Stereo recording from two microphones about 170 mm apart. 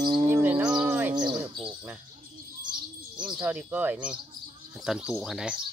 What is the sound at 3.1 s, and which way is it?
Speech, 5° right (ahead or behind).